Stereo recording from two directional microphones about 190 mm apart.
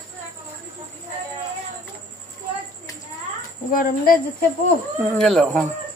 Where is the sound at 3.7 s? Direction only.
50° left (ahead or behind).